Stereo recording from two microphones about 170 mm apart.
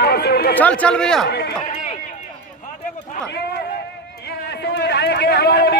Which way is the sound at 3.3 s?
70° left (ahead or behind).